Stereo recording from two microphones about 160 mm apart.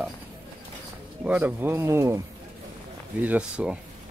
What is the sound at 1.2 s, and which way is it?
Speech, 10° right (ahead or behind).